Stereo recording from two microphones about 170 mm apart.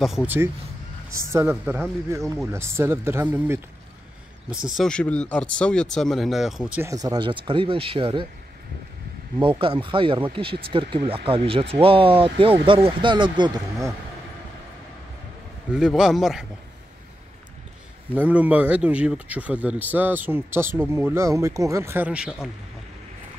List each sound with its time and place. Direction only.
0.0 s speech: 5° right (ahead or behind)
4.7 s speech: 5° left (ahead or behind)
6.9 s speech: 20° right (ahead or behind)
9.4 s speech: 30° right (ahead or behind)
15.7 s speech: 5° right (ahead or behind)
18.1 s speech: 10° right (ahead or behind)